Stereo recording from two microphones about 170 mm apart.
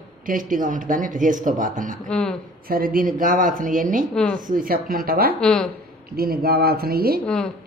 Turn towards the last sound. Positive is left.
turn(degrees=-65)  # may be behind; listen again after turning